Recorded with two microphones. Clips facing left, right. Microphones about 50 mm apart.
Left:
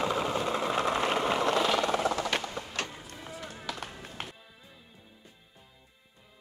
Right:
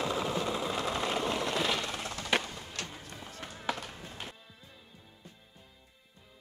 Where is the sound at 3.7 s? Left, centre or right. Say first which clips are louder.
Right 5 dB; right.